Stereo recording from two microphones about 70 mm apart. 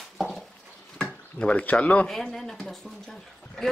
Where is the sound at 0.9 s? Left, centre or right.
Centre.